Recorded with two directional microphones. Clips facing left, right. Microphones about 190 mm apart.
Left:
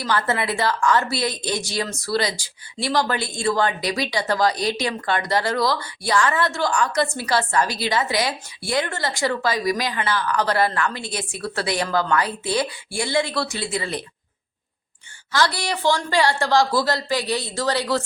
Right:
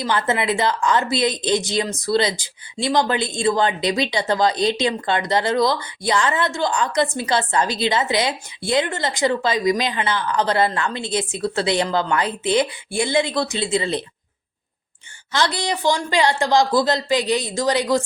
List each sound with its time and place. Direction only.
0.0 s a woman's voice: 20° right (ahead or behind)
15.3 s speech: 20° right (ahead or behind)